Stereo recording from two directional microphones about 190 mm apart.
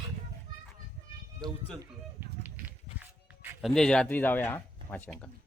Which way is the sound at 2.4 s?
10° right (ahead or behind).